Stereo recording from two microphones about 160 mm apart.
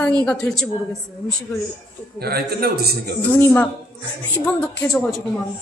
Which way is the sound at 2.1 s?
75° right (ahead or behind).